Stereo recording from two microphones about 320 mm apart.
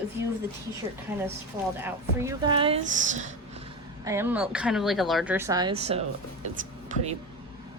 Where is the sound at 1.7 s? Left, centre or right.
Centre; by 3.3 s right.